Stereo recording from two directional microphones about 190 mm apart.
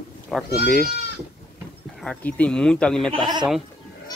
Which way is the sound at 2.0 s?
5° left (ahead or behind).